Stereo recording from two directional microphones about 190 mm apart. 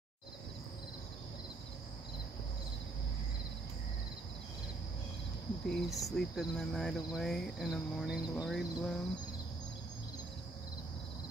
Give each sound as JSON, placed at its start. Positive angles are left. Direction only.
{"t": 5.7, "sound": "cricket", "side_deg": 0}